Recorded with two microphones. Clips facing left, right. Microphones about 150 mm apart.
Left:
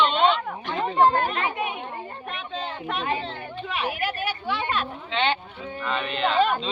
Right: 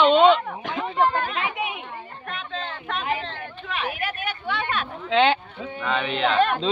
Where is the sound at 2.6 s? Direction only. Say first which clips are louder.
Left 2 dB; 5° left (ahead or behind).